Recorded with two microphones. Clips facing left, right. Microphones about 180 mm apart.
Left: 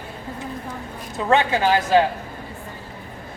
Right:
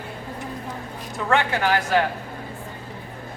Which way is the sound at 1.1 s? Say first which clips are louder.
Left 3 dB; 20° left (ahead or behind).